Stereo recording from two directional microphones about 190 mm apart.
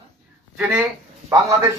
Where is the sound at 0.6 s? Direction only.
5° right (ahead or behind).